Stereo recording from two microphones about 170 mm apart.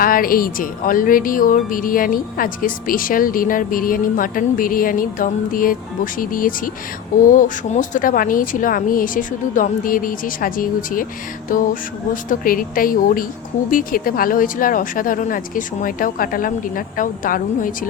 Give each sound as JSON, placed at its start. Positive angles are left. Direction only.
{"t": 0.0, "sound": "speech", "side_deg": 55}